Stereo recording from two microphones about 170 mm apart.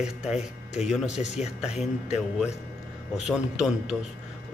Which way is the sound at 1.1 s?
40° left (ahead or behind).